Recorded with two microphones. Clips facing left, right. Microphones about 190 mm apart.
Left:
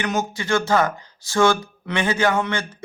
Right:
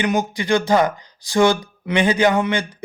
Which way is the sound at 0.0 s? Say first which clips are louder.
Right 4 dB; 15° right (ahead or behind).